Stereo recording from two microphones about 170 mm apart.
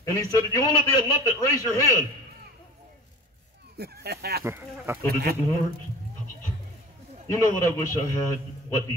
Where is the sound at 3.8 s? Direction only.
70° right (ahead or behind).